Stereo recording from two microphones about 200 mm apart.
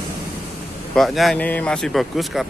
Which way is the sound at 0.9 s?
Centre (ahead or behind).